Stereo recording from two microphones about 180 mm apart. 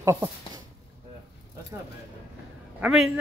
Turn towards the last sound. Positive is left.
turn(degrees=-5)  # may be behind; listen again after turning